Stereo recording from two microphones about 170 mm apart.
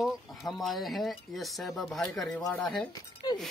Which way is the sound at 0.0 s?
Centre (ahead or behind).